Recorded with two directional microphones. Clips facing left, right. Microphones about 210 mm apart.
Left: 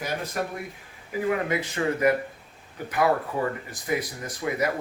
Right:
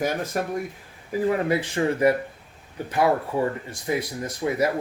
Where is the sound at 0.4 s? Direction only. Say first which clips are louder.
Right 4 dB; 40° right (ahead or behind).